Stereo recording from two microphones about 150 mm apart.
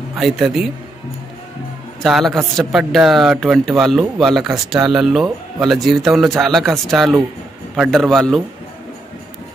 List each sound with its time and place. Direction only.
0.2 s speech: centre (ahead or behind)
2.0 s speech: centre (ahead or behind)